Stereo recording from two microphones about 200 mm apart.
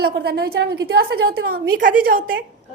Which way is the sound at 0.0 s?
50° right (ahead or behind).